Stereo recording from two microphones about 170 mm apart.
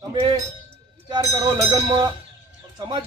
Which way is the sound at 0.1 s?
30° right (ahead or behind).